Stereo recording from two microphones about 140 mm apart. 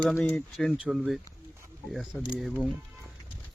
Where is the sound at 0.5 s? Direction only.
Centre (ahead or behind).